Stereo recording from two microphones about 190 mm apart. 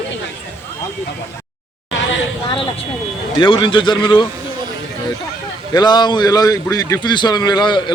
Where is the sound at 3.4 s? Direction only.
25° left (ahead or behind).